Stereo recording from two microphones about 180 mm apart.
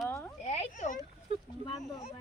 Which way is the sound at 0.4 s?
40° left (ahead or behind).